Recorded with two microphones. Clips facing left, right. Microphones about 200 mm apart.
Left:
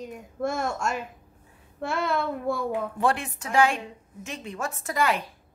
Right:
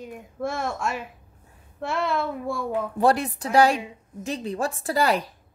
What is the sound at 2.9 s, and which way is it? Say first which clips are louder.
Speech: right 5 dB; 35° right (ahead or behind).